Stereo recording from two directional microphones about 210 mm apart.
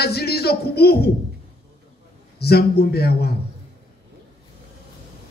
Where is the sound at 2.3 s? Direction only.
50° left (ahead or behind).